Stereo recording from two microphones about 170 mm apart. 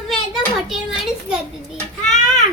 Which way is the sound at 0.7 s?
Centre (ahead or behind).